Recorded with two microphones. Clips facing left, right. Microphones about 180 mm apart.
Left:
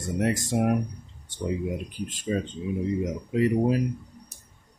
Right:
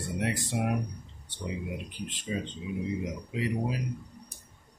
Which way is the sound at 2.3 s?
50° left (ahead or behind).